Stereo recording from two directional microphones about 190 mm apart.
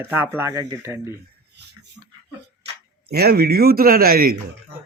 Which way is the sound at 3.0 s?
55° right (ahead or behind).